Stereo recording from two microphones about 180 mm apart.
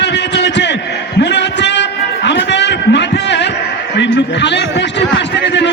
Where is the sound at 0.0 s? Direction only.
75° left (ahead or behind).